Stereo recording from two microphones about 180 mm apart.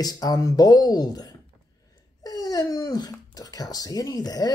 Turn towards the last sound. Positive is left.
turn(degrees=20)  # may be behind; listen again after turning